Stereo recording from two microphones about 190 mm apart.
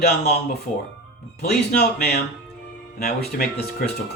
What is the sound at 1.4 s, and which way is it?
Speech, 55° left (ahead or behind).